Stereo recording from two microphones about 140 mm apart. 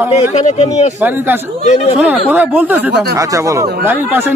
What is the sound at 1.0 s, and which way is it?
A man's voice, 15° right (ahead or behind).